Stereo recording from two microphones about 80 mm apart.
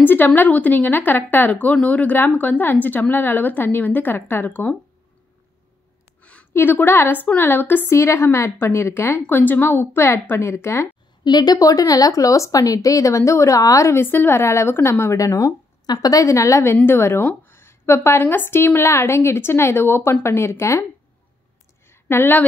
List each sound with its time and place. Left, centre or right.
0.0 s a woman's voice: left
6.5 s a woman's voice: left
11.2 s speech: left
14.0 s speech: left
21.8 s a sound: left